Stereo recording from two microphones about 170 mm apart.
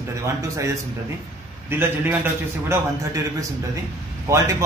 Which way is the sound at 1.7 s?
10° right (ahead or behind).